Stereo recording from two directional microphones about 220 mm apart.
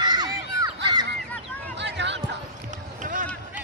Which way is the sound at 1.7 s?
50° right (ahead or behind).